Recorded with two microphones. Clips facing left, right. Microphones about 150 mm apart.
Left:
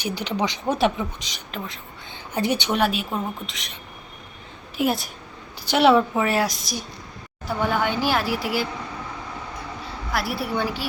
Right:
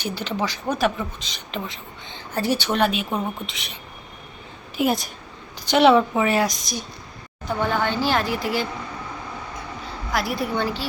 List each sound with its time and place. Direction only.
0.0 s speech: 15° left (ahead or behind)
1.5 s a woman's voice: centre (ahead or behind)
2.1 s a woman's voice: 15° left (ahead or behind); by 3.7 s centre (ahead or behind)
4.8 s a woman's voice: 5° left (ahead or behind)
10.1 s speech: centre (ahead or behind)